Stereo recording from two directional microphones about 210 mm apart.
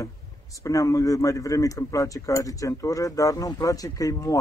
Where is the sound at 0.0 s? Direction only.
15° left (ahead or behind).